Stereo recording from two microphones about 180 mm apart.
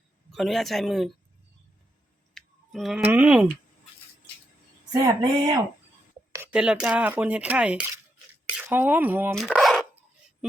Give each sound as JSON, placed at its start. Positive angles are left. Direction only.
{"t": 0.3, "sound": "a man's voice", "side_deg": 0}
{"t": 2.3, "sound": "speech", "side_deg": 0}
{"t": 5.0, "sound": "speech", "side_deg": -20}
{"t": 6.3, "sound": "speech", "side_deg": -10}
{"t": 9.3, "sound": "speech", "side_deg": 0}